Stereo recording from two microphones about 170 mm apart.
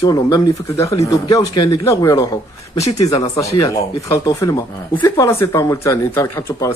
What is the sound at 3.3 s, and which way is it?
A man's voice, 20° left (ahead or behind).